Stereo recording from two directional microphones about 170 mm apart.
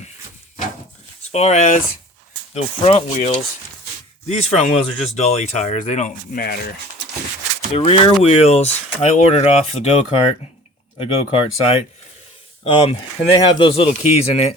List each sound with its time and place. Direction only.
1.3 s speech: 40° left (ahead or behind)
7.7 s speech: 35° left (ahead or behind)